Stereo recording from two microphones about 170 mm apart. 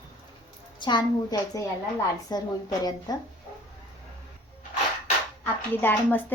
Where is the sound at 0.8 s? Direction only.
25° left (ahead or behind).